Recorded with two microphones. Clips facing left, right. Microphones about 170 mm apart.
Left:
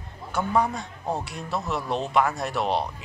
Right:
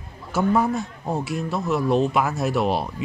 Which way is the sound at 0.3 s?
5° right (ahead or behind).